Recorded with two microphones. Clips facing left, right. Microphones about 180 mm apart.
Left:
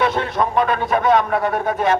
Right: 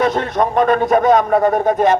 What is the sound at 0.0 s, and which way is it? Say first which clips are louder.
A man's voice: right 3 dB; 45° right (ahead or behind).